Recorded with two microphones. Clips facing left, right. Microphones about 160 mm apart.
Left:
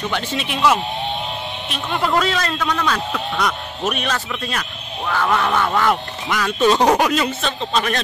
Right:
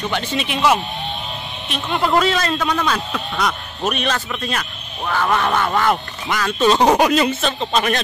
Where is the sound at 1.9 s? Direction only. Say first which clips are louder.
Right 2 dB; 15° right (ahead or behind).